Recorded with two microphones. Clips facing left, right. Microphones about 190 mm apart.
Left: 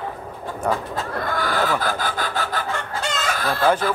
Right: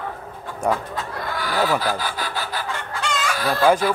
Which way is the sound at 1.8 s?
50° left (ahead or behind).